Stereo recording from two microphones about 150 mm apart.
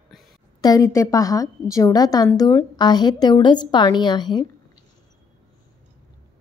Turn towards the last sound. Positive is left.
turn(degrees=30)  # may be behind; listen again after turning